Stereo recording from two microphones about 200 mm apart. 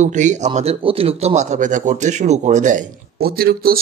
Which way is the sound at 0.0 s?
35° right (ahead or behind).